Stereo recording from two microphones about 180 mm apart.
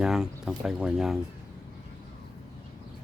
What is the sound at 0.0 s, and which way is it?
Speech, 5° right (ahead or behind).